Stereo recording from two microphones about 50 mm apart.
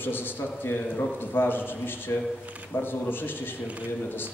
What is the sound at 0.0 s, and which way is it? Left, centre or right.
A man's voice, left.